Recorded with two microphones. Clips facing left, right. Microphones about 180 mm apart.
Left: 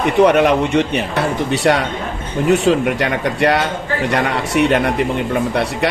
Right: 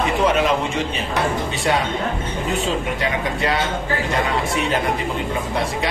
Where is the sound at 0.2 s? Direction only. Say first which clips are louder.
Left 9 dB; 65° left (ahead or behind).